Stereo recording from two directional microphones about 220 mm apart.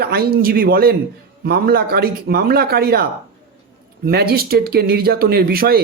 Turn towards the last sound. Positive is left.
turn(degrees=-45)  # may be behind; listen again after turning